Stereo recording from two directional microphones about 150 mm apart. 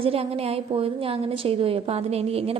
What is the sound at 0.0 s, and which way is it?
A woman's voice, 40° right (ahead or behind).